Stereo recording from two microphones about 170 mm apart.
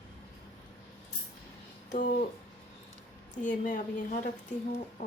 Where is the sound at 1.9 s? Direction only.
50° left (ahead or behind).